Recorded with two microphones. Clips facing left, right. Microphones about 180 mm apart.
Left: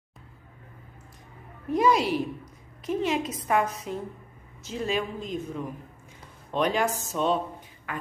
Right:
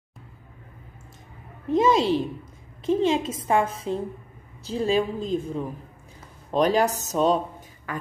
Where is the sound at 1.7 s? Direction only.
25° right (ahead or behind).